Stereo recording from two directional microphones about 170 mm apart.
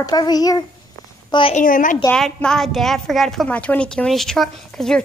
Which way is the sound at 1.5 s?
50° left (ahead or behind).